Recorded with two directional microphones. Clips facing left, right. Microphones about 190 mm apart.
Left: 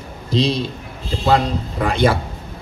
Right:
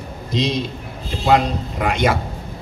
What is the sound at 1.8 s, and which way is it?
Speech, 30° left (ahead or behind).